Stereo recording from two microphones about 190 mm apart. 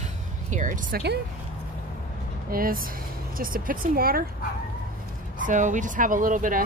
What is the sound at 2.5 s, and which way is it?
Speech, 50° right (ahead or behind).